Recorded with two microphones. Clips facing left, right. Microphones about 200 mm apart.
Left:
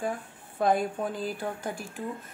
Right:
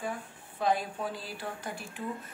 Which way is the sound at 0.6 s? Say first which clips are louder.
Left 4 dB; 50° left (ahead or behind).